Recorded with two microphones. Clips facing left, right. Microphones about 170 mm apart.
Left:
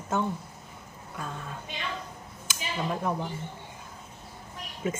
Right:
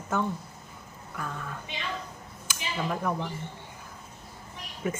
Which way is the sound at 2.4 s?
20° left (ahead or behind).